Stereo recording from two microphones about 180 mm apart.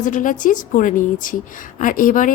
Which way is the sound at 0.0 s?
45° left (ahead or behind).